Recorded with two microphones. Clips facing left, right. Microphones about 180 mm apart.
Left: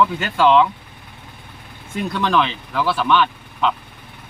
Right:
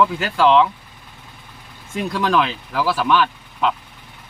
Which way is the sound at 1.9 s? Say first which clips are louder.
Even; 5° right (ahead or behind).